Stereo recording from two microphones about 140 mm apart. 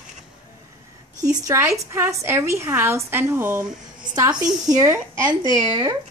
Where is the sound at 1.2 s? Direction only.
25° right (ahead or behind).